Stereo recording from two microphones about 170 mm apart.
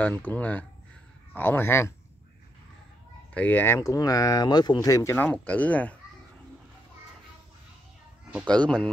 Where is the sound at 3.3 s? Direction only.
10° left (ahead or behind).